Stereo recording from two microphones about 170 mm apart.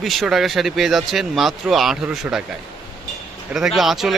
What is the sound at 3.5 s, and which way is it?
Speech, centre (ahead or behind).